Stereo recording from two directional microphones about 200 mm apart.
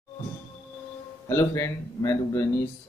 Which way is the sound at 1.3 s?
15° left (ahead or behind).